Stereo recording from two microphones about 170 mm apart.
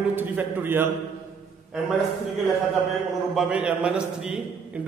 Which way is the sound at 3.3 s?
5° right (ahead or behind).